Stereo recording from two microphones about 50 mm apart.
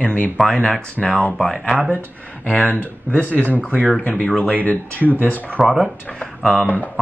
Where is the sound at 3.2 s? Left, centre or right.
Right.